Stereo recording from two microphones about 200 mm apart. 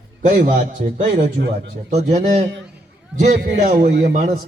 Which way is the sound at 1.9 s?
35° right (ahead or behind).